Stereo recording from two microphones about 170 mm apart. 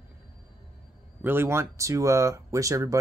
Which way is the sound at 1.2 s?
15° right (ahead or behind).